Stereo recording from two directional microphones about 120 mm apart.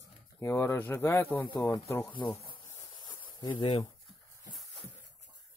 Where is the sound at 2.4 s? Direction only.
45° left (ahead or behind).